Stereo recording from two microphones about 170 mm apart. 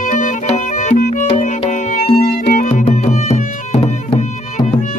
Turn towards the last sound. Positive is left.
turn(degrees=40)  # may be behind; listen again after turning